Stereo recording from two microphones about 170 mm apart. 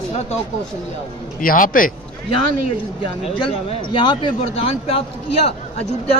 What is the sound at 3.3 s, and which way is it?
A woman's voice, 30° left (ahead or behind).